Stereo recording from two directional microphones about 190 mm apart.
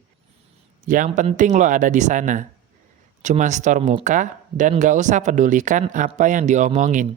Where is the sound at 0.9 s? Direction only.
45° right (ahead or behind).